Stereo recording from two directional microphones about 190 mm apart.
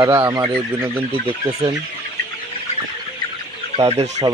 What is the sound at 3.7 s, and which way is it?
Speech, 35° right (ahead or behind).